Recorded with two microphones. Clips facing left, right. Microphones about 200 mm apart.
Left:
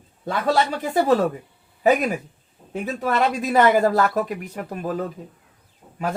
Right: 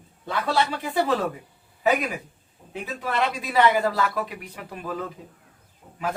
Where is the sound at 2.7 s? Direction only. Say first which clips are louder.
Left 5 dB; 45° left (ahead or behind).